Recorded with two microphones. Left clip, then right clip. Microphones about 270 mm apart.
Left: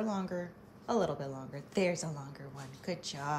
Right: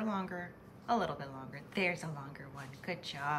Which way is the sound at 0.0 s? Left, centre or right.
Centre.